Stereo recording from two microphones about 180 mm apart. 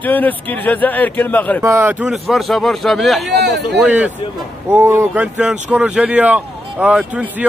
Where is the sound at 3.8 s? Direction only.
5° right (ahead or behind).